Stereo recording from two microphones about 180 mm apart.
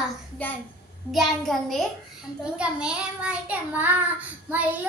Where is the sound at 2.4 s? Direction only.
5° right (ahead or behind).